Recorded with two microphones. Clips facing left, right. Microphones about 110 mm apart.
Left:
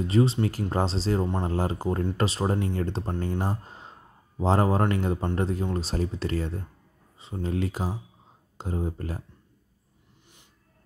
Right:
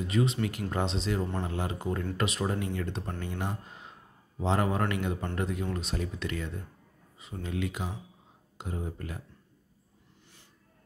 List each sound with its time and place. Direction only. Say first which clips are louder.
0.0 s speech: left 5 dB; 30° left (ahead or behind)